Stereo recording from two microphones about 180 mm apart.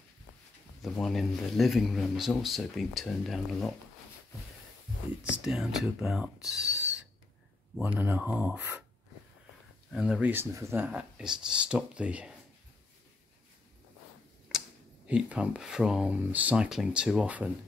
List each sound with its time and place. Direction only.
0.8 s speech: centre (ahead or behind)
5.4 s speech: centre (ahead or behind)
6.6 s owl: 75° right (ahead or behind)
7.8 s speech: 10° right (ahead or behind)
9.9 s speech: 5° right (ahead or behind)
15.0 s speech: 5° right (ahead or behind)